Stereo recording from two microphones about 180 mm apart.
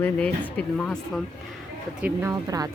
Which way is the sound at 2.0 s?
10° right (ahead or behind).